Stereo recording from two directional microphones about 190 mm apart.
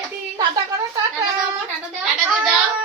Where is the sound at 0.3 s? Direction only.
20° right (ahead or behind).